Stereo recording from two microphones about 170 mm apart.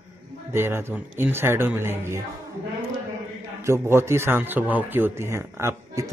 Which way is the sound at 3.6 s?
15° right (ahead or behind).